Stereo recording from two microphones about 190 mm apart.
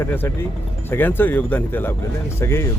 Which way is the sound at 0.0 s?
10° left (ahead or behind).